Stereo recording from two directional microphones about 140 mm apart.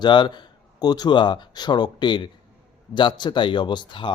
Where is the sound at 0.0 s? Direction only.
35° left (ahead or behind).